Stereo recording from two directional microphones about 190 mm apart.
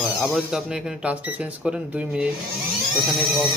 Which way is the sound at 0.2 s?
Centre (ahead or behind).